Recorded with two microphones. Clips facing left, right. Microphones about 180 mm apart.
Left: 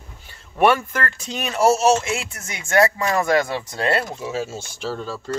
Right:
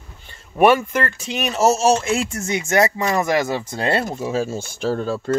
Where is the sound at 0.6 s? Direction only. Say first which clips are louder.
Right 3 dB; 10° right (ahead or behind).